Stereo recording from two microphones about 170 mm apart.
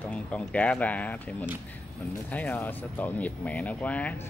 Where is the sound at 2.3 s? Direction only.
10° left (ahead or behind).